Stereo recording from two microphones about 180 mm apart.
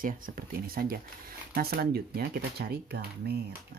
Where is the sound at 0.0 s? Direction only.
55° right (ahead or behind).